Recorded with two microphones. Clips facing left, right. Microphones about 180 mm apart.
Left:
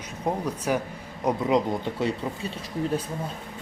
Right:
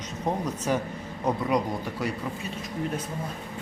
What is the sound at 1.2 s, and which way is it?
Speech, 20° left (ahead or behind).